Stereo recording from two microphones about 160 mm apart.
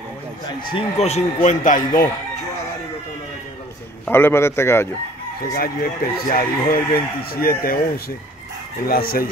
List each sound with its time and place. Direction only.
0.7 s speech: 35° left (ahead or behind); by 1.9 s 55° left (ahead or behind)
4.0 s a man's voice: 15° left (ahead or behind)
5.5 s speech: 65° left (ahead or behind)
8.8 s speech: 65° left (ahead or behind)